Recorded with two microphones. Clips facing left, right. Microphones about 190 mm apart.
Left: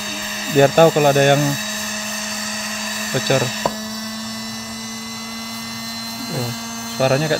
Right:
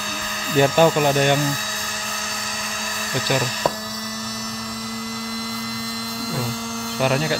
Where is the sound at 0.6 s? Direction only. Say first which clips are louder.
Left 4 dB; 50° left (ahead or behind).